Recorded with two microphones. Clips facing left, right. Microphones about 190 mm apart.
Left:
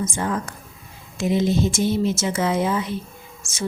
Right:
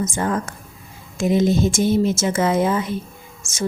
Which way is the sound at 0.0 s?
45° right (ahead or behind).